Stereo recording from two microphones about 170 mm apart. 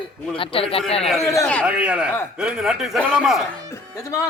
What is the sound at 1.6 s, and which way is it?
A man's voice, 5° right (ahead or behind).